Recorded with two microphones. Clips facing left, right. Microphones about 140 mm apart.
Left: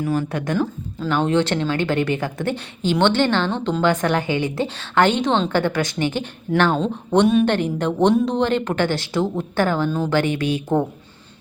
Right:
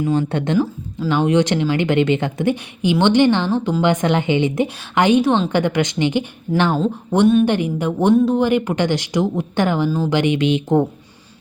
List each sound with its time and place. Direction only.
0.0 s speech: 25° right (ahead or behind)
0.6 s speech: 10° right (ahead or behind)
6.7 s speech: 5° right (ahead or behind)